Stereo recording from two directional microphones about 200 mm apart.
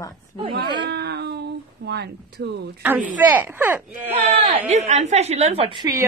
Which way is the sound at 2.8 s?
10° right (ahead or behind).